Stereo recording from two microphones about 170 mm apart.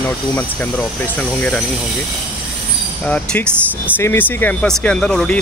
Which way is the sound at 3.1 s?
5° left (ahead or behind).